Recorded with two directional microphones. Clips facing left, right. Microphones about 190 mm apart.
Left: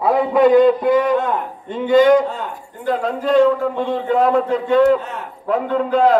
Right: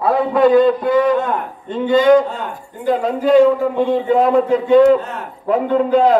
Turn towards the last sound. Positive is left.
turn(degrees=0)  # may be behind; listen again after turning